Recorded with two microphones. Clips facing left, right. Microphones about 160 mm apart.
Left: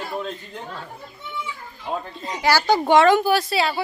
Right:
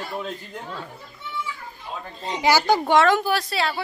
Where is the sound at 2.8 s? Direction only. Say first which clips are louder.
Left 3 dB; centre (ahead or behind).